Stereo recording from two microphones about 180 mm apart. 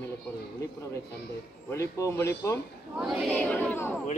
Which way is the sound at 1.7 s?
15° left (ahead or behind).